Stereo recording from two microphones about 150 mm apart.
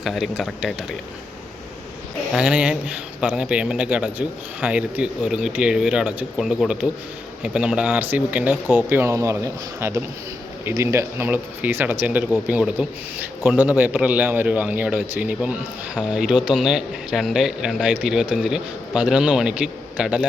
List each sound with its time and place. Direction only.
0.0 s a man's voice: centre (ahead or behind)
2.3 s a man's voice: 5° right (ahead or behind)